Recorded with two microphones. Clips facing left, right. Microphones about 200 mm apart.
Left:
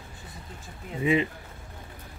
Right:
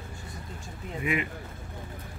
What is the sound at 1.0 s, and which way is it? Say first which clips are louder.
Speech: left 6 dB; 30° left (ahead or behind).